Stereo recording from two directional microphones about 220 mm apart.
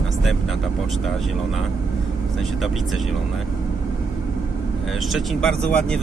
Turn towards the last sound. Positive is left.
turn(degrees=5)  # may be behind; listen again after turning